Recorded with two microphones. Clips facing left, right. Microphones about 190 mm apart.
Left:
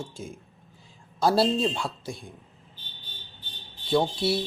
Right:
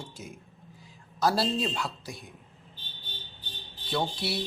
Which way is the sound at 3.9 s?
25° left (ahead or behind).